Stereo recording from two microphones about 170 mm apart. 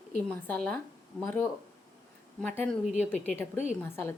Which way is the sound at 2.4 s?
10° left (ahead or behind).